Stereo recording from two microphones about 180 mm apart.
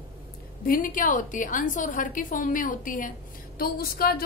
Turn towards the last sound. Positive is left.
turn(degrees=55)  # may be behind; listen again after turning